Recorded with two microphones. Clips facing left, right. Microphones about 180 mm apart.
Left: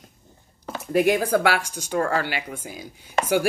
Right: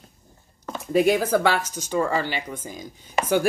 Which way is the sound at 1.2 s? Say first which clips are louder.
Even; 10° left (ahead or behind).